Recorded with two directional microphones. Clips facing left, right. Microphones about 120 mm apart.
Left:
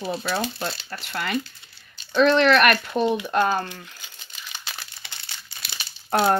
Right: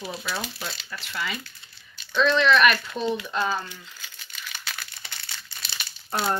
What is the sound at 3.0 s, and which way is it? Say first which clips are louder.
Speech: left 3 dB; 15° left (ahead or behind).